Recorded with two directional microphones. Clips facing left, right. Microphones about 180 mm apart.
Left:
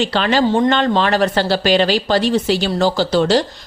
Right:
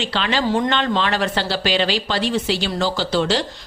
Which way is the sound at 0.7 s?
45° left (ahead or behind).